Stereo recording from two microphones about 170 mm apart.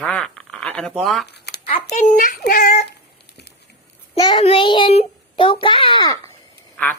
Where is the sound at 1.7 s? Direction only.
40° left (ahead or behind).